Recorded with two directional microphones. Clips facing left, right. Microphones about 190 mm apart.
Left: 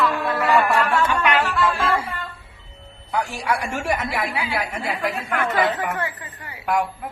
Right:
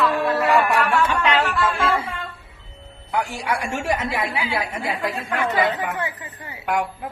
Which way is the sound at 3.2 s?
20° right (ahead or behind).